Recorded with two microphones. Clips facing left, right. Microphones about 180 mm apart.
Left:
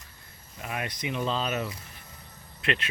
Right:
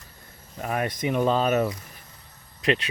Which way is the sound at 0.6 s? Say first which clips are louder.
Right 7 dB; 45° right (ahead or behind).